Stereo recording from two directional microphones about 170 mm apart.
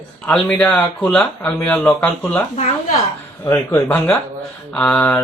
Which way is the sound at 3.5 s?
15° left (ahead or behind).